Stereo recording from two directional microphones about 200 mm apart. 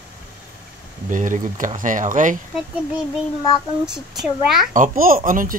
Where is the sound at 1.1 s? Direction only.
40° right (ahead or behind).